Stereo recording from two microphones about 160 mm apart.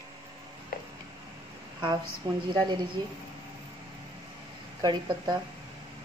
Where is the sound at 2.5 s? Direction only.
25° right (ahead or behind).